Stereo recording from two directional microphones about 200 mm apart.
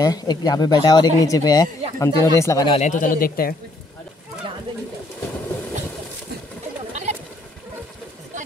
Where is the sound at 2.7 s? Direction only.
40° left (ahead or behind).